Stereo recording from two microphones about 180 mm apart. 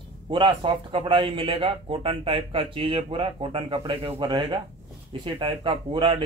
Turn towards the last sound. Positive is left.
turn(degrees=-30)  # may be behind; listen again after turning